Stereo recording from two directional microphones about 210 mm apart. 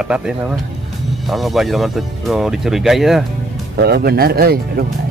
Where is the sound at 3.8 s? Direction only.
50° right (ahead or behind).